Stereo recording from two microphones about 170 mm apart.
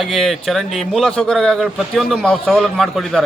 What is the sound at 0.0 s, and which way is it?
A man's voice, centre (ahead or behind).